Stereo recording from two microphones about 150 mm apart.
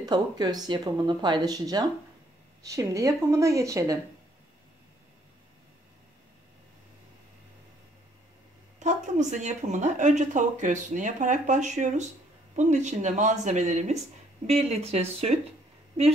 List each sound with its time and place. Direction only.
0.0 s speech: 30° right (ahead or behind)
8.7 s a woman's voice: 55° right (ahead or behind)